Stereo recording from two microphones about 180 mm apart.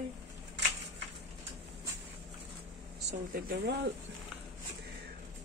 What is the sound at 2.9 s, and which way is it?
Speech, 65° right (ahead or behind).